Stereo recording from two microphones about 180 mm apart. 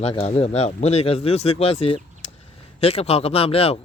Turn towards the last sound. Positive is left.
turn(degrees=30)  # may be behind; listen again after turning